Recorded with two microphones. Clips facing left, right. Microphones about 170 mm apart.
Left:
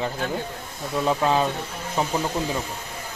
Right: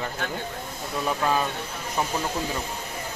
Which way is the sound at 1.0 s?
25° left (ahead or behind).